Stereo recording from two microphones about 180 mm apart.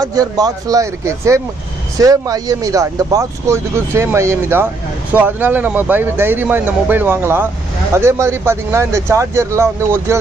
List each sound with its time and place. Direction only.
0.0 s speech: 20° right (ahead or behind)